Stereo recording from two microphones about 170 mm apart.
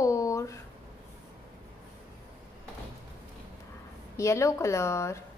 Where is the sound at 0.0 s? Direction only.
20° left (ahead or behind).